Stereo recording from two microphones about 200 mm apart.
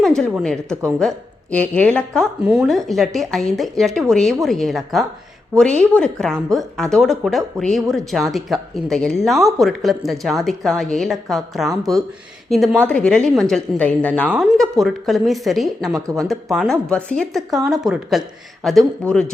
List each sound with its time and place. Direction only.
0.0 s speech: centre (ahead or behind)
14.3 s speech: 5° right (ahead or behind)